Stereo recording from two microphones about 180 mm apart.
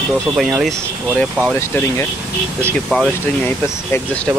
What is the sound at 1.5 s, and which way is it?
Speech, 10° left (ahead or behind).